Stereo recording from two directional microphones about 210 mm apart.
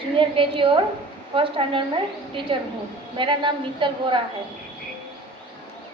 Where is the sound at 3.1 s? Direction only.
20° right (ahead or behind).